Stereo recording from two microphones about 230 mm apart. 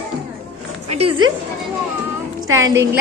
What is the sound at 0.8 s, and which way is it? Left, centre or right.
Speech, right.